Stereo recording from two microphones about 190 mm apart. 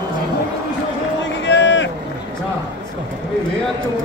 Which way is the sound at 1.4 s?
70° left (ahead or behind).